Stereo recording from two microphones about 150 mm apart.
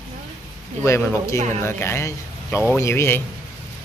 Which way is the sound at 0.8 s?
15° left (ahead or behind).